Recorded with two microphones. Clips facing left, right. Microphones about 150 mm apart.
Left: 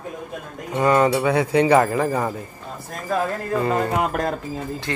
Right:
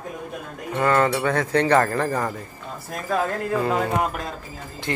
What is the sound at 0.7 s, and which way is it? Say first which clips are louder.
Speech: left 3 dB; 15° left (ahead or behind).